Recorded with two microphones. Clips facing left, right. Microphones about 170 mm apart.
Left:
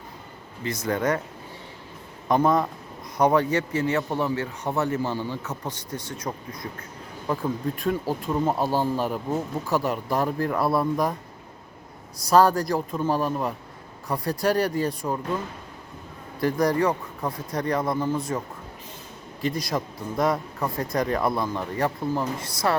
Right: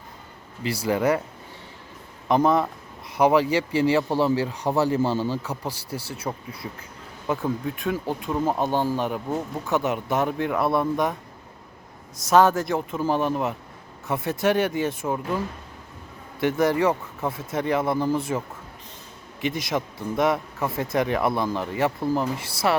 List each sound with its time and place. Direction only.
0.8 s speech: 10° right (ahead or behind)
2.2 s a man's voice: centre (ahead or behind)
3.5 s a man's voice: 30° right (ahead or behind)
5.3 s speech: 10° right (ahead or behind)
12.3 s speech: centre (ahead or behind)
16.4 s speech: 5° right (ahead or behind)
19.6 s speech: centre (ahead or behind)
22.4 s speech: 30° right (ahead or behind)